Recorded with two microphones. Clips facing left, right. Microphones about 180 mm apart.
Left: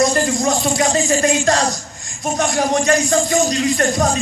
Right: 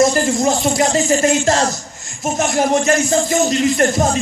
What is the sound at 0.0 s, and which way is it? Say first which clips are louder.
A man's voice: right 2 dB; 25° right (ahead or behind).